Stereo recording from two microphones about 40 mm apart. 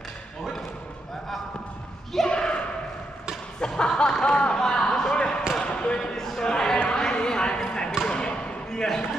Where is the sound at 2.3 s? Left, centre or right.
Left.